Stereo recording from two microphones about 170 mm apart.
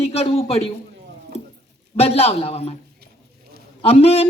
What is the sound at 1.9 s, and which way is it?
Speech, 35° left (ahead or behind).